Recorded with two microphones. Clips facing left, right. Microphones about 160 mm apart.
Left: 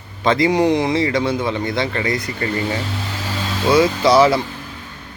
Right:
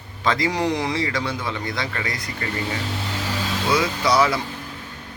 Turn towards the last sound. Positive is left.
turn(degrees=25)  # may be behind; listen again after turning